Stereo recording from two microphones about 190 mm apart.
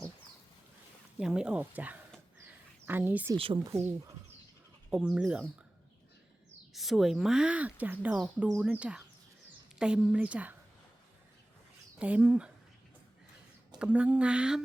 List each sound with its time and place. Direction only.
1.2 s speech: 5° right (ahead or behind)
3.3 s speech: 25° right (ahead or behind)
4.9 s a woman's voice: 5° right (ahead or behind)
6.7 s a woman's voice: centre (ahead or behind)
11.9 s speech: 10° right (ahead or behind)
13.7 s a woman's voice: 5° right (ahead or behind)